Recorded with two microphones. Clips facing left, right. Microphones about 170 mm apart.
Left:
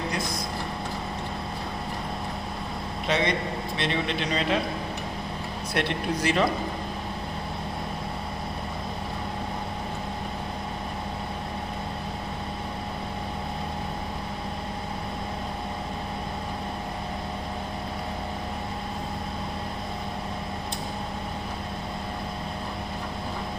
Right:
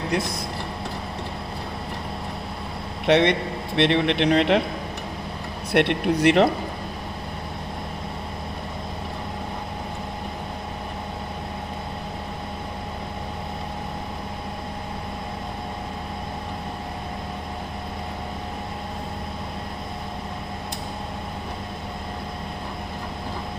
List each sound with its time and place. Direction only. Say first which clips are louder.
3.1 s a man's voice: right 7 dB; 65° right (ahead or behind)
5.7 s speech: right 8 dB; 65° right (ahead or behind)